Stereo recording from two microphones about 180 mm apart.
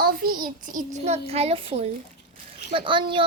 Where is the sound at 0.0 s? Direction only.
55° right (ahead or behind).